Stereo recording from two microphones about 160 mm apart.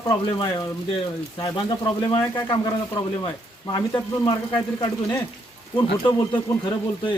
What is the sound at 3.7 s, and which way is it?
Speech, 25° left (ahead or behind).